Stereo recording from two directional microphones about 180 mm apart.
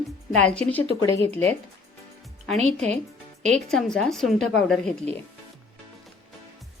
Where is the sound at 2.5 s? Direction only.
35° right (ahead or behind).